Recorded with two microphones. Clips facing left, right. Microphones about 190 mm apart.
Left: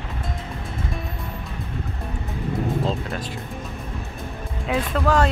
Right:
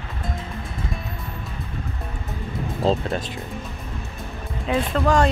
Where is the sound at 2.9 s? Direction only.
30° right (ahead or behind).